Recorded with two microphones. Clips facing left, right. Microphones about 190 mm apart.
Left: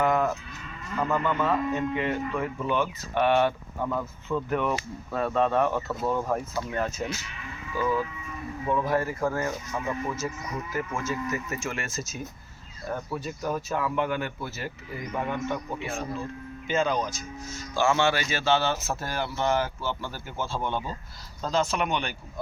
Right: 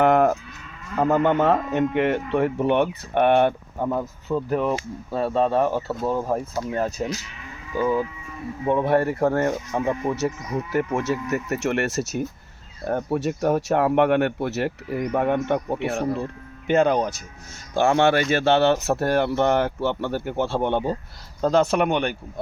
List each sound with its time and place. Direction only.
0.0 s moo: 60° right (ahead or behind)
0.9 s speech: 50° right (ahead or behind)
1.2 s speech: 70° right (ahead or behind); by 3.8 s 55° right (ahead or behind)
3.8 s speech: 30° right (ahead or behind)
7.8 s speech: 20° right (ahead or behind)
8.9 s speech: 65° right (ahead or behind)